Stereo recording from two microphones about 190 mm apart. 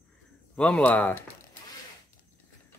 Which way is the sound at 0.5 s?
5° left (ahead or behind).